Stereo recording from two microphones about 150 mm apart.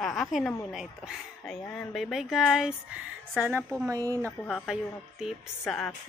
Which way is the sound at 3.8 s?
25° right (ahead or behind).